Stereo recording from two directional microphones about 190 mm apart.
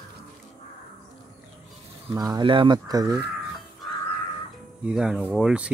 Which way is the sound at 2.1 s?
20° right (ahead or behind).